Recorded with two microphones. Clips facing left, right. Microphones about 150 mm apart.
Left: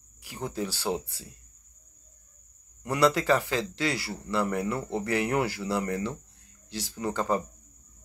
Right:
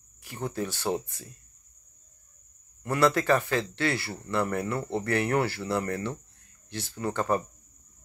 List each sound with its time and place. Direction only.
0.2 s speech: 15° left (ahead or behind)
2.8 s speech: 15° left (ahead or behind)